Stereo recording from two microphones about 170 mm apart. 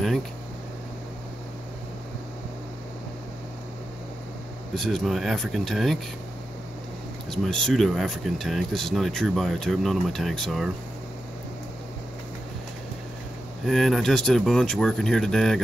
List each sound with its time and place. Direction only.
4.7 s speech: centre (ahead or behind)
7.2 s speech: centre (ahead or behind)
13.7 s speech: centre (ahead or behind)